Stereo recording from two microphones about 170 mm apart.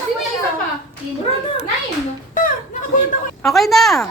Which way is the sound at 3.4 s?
Centre (ahead or behind).